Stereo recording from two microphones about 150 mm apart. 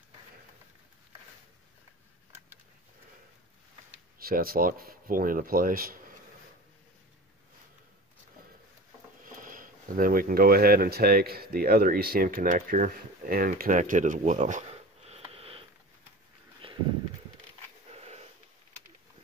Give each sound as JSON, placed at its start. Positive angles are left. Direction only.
{"t": 4.2, "sound": "speech", "side_deg": -80}
{"t": 9.2, "sound": "speech", "side_deg": -65}
{"t": 16.6, "sound": "walk", "side_deg": -40}
{"t": 17.9, "sound": "sniff", "side_deg": -45}